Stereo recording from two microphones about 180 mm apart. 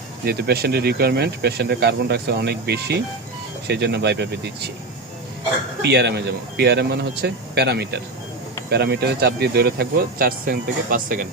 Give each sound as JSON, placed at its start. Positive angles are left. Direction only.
{"t": 0.3, "sound": "speech", "side_deg": -60}
{"t": 5.8, "sound": "speech", "side_deg": -70}